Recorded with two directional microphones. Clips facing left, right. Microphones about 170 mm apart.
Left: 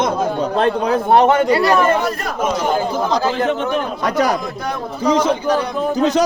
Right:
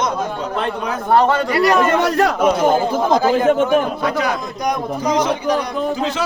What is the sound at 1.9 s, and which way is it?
Speech, 80° right.